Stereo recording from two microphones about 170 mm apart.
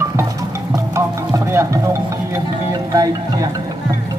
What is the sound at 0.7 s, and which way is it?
Music, 15° right (ahead or behind).